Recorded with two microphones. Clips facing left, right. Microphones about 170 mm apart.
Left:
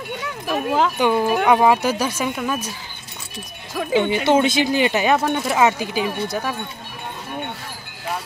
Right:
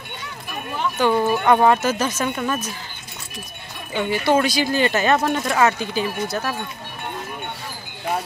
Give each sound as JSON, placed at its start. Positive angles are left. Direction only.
{"t": 0.5, "sound": "speech", "side_deg": 90}
{"t": 0.9, "sound": "speech", "side_deg": 10}
{"t": 3.7, "sound": "music", "side_deg": 90}
{"t": 4.0, "sound": "speech", "side_deg": 20}